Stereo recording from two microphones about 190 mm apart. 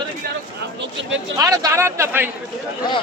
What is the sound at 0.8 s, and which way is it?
Speech, 75° right (ahead or behind).